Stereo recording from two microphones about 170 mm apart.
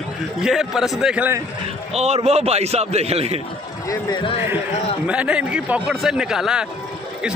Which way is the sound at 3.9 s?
25° left (ahead or behind).